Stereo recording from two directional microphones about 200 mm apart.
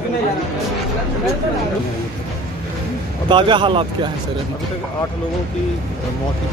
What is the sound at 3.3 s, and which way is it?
Speech, 25° right (ahead or behind).